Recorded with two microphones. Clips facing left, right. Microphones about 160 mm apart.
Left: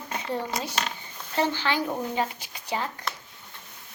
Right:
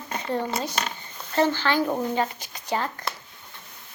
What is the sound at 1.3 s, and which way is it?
Speech, 15° left (ahead or behind).